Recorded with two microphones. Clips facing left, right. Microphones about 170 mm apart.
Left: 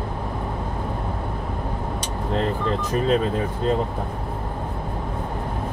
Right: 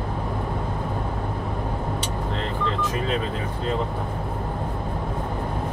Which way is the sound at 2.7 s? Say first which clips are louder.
Left 5 dB; 40° left (ahead or behind).